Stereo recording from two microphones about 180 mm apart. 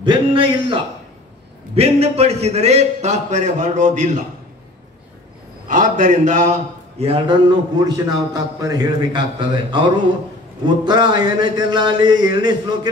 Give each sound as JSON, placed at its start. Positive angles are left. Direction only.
{"t": 0.0, "sound": "a sound", "side_deg": -30}
{"t": 1.8, "sound": "a man's voice", "side_deg": -35}
{"t": 5.7, "sound": "a man's voice", "side_deg": -45}
{"t": 7.0, "sound": "a man's voice", "side_deg": -30}